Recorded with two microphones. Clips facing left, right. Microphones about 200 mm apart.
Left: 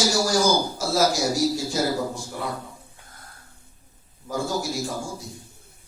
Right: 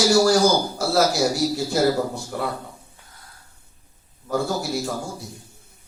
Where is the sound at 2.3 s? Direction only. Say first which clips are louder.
Right 6 dB; 60° right (ahead or behind).